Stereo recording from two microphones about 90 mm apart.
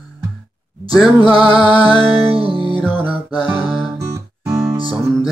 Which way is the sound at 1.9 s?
90° right.